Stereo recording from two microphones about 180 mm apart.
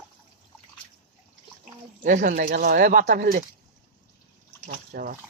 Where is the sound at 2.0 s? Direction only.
45° right (ahead or behind).